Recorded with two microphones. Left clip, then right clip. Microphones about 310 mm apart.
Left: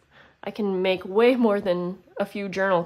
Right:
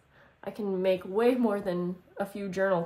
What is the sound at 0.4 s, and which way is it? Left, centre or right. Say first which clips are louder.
Speech: left 5 dB; centre.